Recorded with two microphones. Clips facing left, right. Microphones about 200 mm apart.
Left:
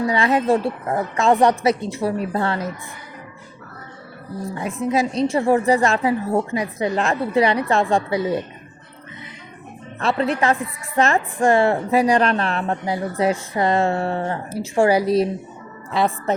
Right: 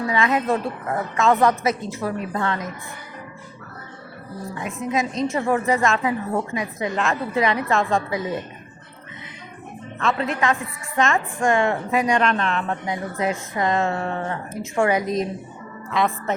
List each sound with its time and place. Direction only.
0.1 s a woman's voice: 30° left (ahead or behind)
4.5 s a woman's voice: 35° left (ahead or behind)
10.0 s a woman's voice: 35° left (ahead or behind)
15.0 s a woman's voice: 5° left (ahead or behind)
15.9 s a woman's voice: 30° left (ahead or behind)